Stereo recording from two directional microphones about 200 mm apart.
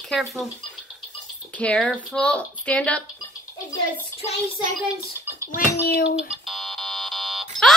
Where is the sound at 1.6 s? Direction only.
5° left (ahead or behind).